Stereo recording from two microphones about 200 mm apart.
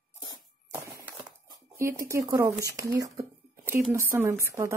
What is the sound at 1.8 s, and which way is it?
Speech, 15° right (ahead or behind).